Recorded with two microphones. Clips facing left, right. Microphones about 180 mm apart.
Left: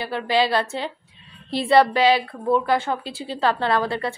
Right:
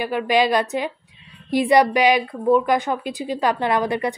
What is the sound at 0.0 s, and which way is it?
A woman's voice, 15° right (ahead or behind).